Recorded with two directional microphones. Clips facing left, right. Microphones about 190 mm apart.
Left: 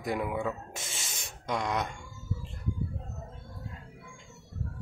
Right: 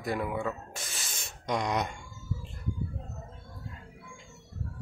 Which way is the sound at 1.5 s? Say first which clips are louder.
Right 1 dB; centre (ahead or behind).